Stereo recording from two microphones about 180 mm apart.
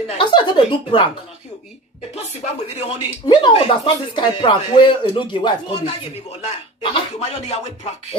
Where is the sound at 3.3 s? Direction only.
25° left (ahead or behind).